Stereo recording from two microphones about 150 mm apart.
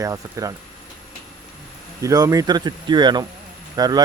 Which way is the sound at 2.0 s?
25° right (ahead or behind).